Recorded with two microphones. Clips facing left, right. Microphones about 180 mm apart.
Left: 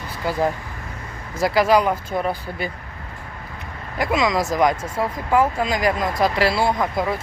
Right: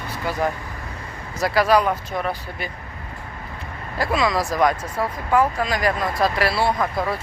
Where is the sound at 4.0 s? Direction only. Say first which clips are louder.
Left 1 dB; 20° left (ahead or behind).